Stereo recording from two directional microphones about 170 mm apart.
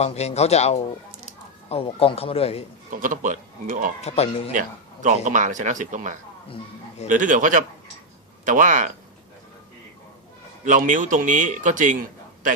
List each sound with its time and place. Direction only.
0.0 s speech: 40° left (ahead or behind)
2.9 s a man's voice: 50° right (ahead or behind)
4.0 s speech: 35° left (ahead or behind)
5.0 s a man's voice: 50° right (ahead or behind)
10.7 s a man's voice: 50° right (ahead or behind)